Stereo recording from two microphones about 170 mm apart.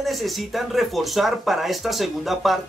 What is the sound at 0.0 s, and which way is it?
Speech, centre (ahead or behind).